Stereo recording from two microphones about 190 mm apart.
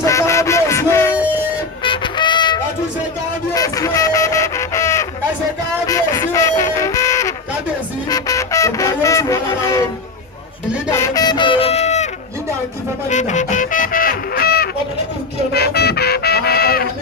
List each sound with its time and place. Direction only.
0.0 s music: 15° left (ahead or behind)
1.1 s a sound: 10° right (ahead or behind)
1.8 s child singing: 25° left (ahead or behind)
3.5 s fowl: 15° left (ahead or behind)
5.9 s a sound: 15° left (ahead or behind)
8.1 s music: 15° left (ahead or behind)
10.9 s music: 15° left (ahead or behind); by 12.1 s 35° left (ahead or behind)
13.1 s music: 40° left (ahead or behind)